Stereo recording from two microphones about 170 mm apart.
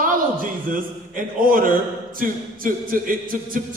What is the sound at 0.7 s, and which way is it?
A man's voice, 55° right (ahead or behind).